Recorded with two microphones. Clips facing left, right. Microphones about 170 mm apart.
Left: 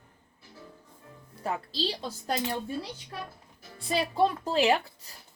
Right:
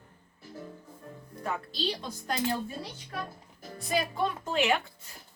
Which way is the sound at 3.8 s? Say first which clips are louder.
Left 4 dB; 30° left (ahead or behind).